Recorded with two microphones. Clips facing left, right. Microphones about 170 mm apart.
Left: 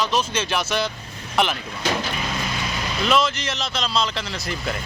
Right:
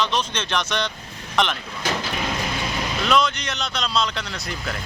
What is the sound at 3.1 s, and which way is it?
Speech, centre (ahead or behind).